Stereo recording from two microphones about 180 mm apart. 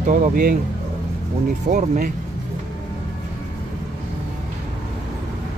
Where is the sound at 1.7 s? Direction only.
50° right (ahead or behind).